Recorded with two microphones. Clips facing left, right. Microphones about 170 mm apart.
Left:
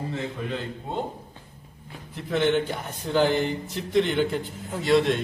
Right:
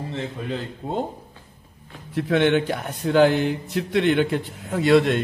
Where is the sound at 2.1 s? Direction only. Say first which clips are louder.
Right 4 dB; 70° right (ahead or behind).